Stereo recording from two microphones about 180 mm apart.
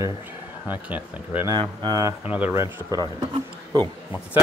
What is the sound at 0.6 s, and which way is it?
Speech, 10° right (ahead or behind).